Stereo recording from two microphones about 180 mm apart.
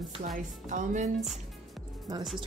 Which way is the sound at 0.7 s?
45° right (ahead or behind).